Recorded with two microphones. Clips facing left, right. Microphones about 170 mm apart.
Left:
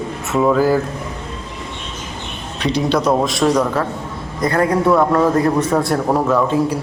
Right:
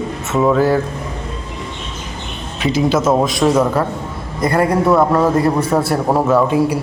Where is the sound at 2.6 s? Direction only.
5° right (ahead or behind).